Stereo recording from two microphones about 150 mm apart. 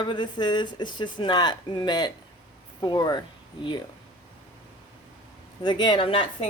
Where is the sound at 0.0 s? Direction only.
30° left (ahead or behind).